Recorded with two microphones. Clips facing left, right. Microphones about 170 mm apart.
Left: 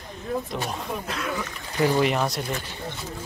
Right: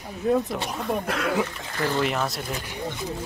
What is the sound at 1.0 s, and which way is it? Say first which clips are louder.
Speech: right 5 dB; 65° right (ahead or behind).